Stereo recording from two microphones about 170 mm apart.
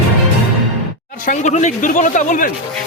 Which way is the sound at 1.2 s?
45° left (ahead or behind).